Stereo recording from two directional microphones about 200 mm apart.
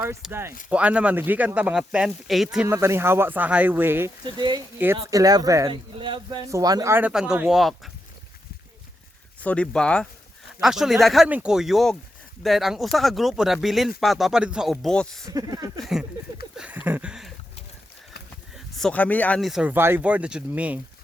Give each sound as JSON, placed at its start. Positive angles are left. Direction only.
{"t": 0.2, "sound": "speech", "side_deg": -10}
{"t": 2.6, "sound": "speech", "side_deg": -15}
{"t": 9.4, "sound": "speech", "side_deg": 5}
{"t": 15.3, "sound": "speech", "side_deg": -20}
{"t": 15.8, "sound": "speech", "side_deg": 0}
{"t": 16.6, "sound": "a sound", "side_deg": -5}
{"t": 18.5, "sound": "speech", "side_deg": 0}